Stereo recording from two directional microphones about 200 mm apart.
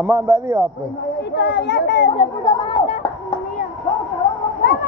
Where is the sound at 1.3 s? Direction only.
60° left (ahead or behind).